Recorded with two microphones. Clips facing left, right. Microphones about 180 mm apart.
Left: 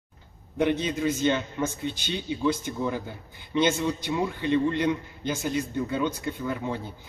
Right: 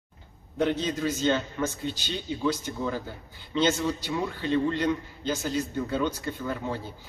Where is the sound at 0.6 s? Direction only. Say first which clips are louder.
Left 1 dB; 15° left (ahead or behind).